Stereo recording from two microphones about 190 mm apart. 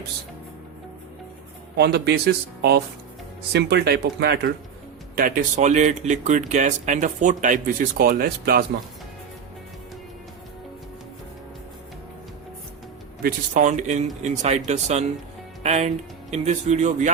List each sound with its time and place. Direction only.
1.7 s speech: 60° right (ahead or behind)
5.1 s speech: 45° right (ahead or behind)
13.2 s speech: 40° right (ahead or behind)